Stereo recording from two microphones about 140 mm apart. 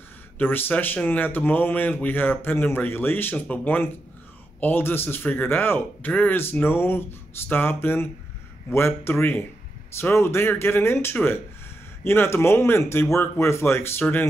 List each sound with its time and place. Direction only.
0.4 s a man's voice: 15° left (ahead or behind)